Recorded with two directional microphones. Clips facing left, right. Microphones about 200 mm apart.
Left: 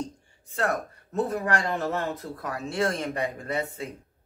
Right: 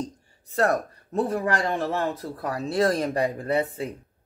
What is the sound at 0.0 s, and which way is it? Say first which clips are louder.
Speech: right 2 dB; 35° right (ahead or behind).